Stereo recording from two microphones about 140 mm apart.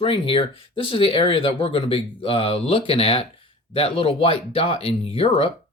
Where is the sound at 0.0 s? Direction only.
40° left (ahead or behind).